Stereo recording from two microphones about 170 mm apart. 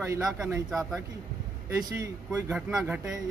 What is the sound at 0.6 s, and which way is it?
Speech, 5° right (ahead or behind).